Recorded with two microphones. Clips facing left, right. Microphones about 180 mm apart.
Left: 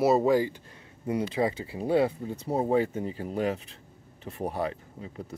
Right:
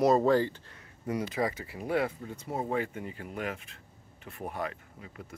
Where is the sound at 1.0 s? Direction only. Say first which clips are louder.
Left 4 dB; 30° left (ahead or behind).